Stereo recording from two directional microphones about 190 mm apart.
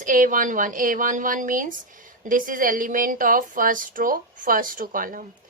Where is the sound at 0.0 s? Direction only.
45° right (ahead or behind).